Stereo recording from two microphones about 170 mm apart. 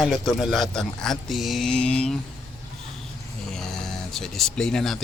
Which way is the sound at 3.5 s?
5° left (ahead or behind).